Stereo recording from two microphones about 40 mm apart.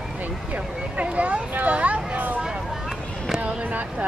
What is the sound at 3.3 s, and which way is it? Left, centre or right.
Speech, right.